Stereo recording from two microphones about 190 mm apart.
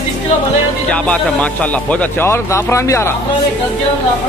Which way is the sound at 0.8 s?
5° left (ahead or behind).